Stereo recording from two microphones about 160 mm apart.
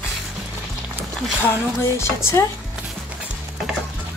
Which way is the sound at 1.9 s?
15° left (ahead or behind).